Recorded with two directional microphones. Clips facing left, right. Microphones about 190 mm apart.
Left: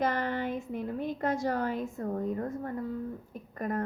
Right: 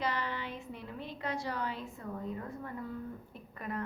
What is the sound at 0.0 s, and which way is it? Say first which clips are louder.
A woman's voice: left 6 dB; 50° left (ahead or behind).